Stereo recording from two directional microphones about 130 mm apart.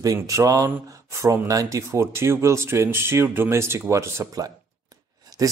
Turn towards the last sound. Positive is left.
turn(degrees=-30)  # may be behind; listen again after turning